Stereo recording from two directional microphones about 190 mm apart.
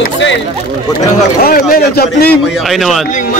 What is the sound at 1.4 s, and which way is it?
Speech, 50° left (ahead or behind).